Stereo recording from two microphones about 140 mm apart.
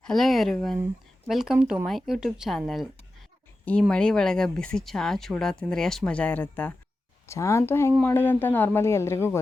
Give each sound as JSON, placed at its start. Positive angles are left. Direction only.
{"t": 0.0, "sound": "a woman's voice", "side_deg": 0}